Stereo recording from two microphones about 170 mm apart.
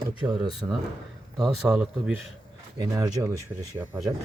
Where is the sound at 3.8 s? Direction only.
10° right (ahead or behind).